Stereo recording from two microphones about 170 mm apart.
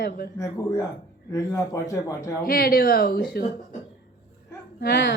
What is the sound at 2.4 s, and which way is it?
A woman's voice, 60° left (ahead or behind).